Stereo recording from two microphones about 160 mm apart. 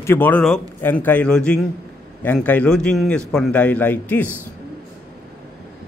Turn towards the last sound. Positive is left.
turn(degrees=10)  # may be behind; listen again after turning